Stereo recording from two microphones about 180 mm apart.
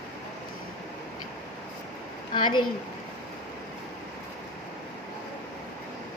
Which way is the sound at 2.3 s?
25° left (ahead or behind).